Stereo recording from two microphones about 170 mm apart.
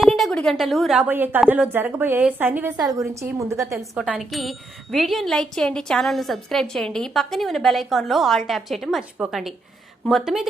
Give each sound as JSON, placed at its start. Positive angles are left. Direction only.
{"t": 0.0, "sound": "a woman's voice", "side_deg": 0}
{"t": 3.7, "sound": "a woman's voice", "side_deg": -5}